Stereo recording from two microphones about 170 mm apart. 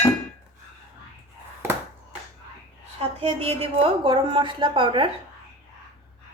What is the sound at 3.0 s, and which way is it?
A woman's voice, 35° right (ahead or behind).